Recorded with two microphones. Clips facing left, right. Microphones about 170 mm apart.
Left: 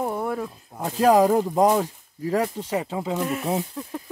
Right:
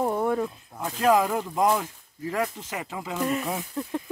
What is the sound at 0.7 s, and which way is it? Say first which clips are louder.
Speech: left 4 dB; 35° left (ahead or behind).